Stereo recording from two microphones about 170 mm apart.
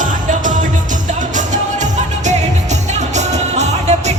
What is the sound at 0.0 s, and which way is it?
Music, 50° right (ahead or behind).